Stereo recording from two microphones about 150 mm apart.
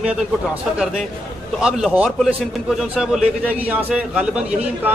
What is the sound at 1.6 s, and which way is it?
A man's voice, 5° right (ahead or behind).